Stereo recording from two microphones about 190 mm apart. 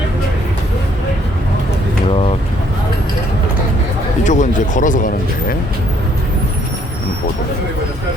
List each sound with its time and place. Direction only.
4.2 s speech: 40° left (ahead or behind)